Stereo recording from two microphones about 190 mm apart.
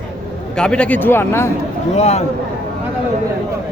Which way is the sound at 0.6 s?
5° left (ahead or behind).